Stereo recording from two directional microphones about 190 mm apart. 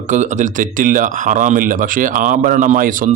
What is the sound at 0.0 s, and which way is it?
Speech, 40° right (ahead or behind).